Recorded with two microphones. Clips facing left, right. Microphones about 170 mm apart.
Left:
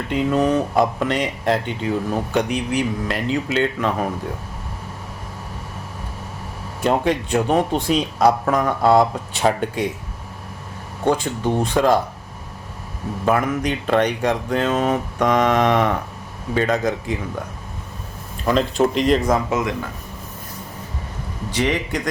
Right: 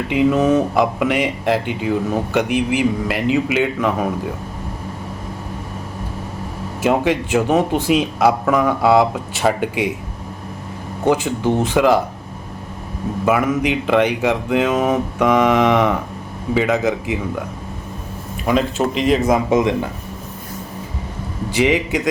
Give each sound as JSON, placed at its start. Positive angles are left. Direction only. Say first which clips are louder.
{"t": 0.1, "sound": "speech", "louder": "right 3 dB", "side_deg": -10}
{"t": 6.8, "sound": "speech", "louder": "right 2 dB", "side_deg": -5}
{"t": 11.0, "sound": "speech", "louder": "right 3 dB", "side_deg": -5}
{"t": 13.2, "sound": "speech", "louder": "right 2 dB", "side_deg": -5}
{"t": 18.4, "sound": "speech", "louder": "even", "side_deg": -5}
{"t": 19.3, "sound": "speech", "louder": "right 4 dB", "side_deg": -20}
{"t": 21.5, "sound": "speech", "louder": "right 5 dB", "side_deg": -10}